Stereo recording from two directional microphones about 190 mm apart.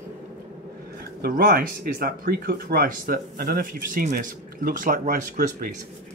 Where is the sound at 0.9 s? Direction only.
50° right (ahead or behind).